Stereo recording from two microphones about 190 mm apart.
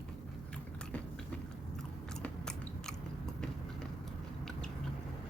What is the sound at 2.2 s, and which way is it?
Biting, 5° left (ahead or behind).